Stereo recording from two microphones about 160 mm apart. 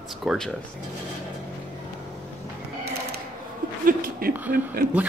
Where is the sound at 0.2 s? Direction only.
Centre (ahead or behind).